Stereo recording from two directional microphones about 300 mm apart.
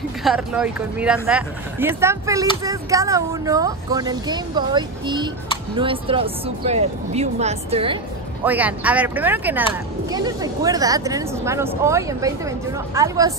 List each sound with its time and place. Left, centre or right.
0.2 s speech: centre
8.5 s speech: centre